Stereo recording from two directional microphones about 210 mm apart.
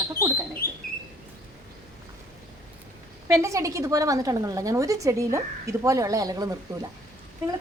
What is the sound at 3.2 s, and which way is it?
A woman's voice, 15° right (ahead or behind).